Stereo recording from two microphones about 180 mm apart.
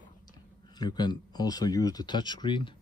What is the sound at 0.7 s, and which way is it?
Speech, 25° left (ahead or behind).